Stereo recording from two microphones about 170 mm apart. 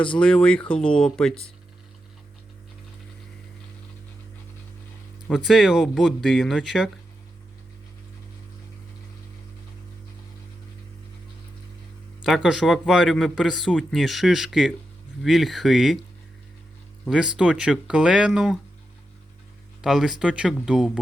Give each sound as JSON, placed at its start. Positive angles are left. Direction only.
{"t": 0.2, "sound": "speech", "side_deg": 5}
{"t": 0.7, "sound": "speech", "side_deg": 30}
{"t": 0.9, "sound": "speech", "side_deg": 5}
{"t": 5.3, "sound": "speech", "side_deg": 0}
{"t": 12.2, "sound": "speech", "side_deg": 0}
{"t": 17.1, "sound": "speech", "side_deg": -5}
{"t": 19.8, "sound": "speech", "side_deg": 0}